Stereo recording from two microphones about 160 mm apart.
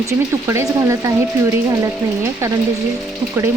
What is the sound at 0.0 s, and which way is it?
Speech, 20° right (ahead or behind).